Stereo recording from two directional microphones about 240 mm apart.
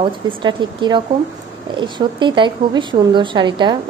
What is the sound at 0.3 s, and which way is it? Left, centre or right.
A woman's voice, centre.